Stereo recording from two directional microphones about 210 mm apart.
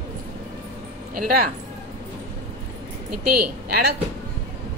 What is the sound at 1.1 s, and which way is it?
Speech, 45° right (ahead or behind).